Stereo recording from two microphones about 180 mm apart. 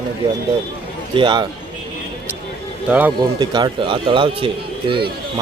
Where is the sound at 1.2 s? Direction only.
25° right (ahead or behind).